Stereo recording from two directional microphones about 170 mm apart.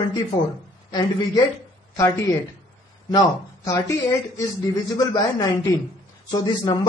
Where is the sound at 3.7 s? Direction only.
20° left (ahead or behind).